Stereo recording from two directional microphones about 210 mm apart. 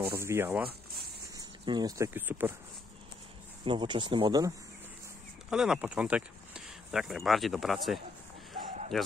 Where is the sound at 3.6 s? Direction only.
20° right (ahead or behind).